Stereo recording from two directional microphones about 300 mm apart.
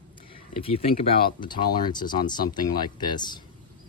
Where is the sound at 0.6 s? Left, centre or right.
Centre.